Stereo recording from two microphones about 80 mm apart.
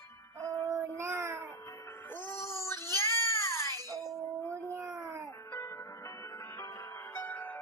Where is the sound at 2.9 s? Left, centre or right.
Left.